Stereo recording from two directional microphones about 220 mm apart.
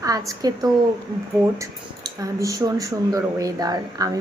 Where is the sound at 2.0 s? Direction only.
15° right (ahead or behind).